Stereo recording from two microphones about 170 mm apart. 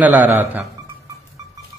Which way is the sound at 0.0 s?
10° right (ahead or behind).